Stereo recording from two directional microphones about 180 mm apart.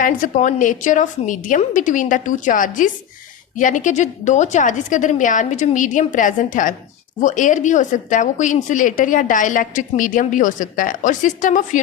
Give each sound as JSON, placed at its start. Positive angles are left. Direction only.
{"t": 0.0, "sound": "speech", "side_deg": 45}